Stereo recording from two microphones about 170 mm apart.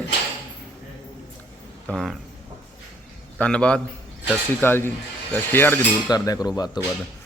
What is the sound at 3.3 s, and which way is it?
Speech, 5° left (ahead or behind).